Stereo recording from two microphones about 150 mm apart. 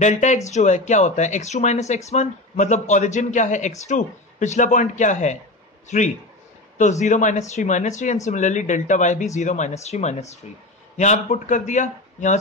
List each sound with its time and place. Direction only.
0.0 s speech: 55° left (ahead or behind)